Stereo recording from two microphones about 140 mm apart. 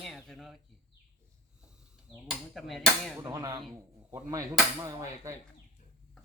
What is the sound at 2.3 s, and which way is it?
Speech, centre (ahead or behind).